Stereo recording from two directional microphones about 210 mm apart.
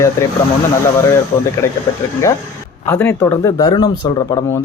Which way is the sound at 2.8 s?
10° left (ahead or behind).